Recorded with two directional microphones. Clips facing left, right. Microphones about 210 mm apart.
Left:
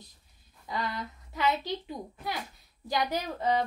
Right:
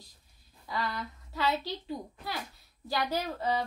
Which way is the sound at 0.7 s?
20° left (ahead or behind).